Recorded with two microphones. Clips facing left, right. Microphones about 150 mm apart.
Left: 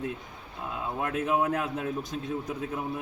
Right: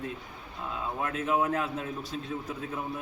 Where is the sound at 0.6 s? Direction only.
10° left (ahead or behind).